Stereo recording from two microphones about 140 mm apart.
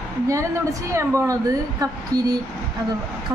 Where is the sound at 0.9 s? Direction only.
20° right (ahead or behind).